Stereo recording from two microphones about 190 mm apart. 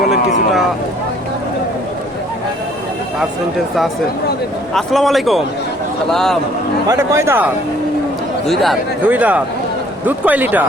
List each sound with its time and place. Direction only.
4.7 s speech: centre (ahead or behind)
6.8 s a man's voice: 15° right (ahead or behind)
8.4 s a man's voice: centre (ahead or behind)